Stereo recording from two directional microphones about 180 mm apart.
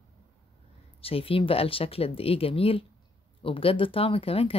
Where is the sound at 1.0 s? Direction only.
30° left (ahead or behind).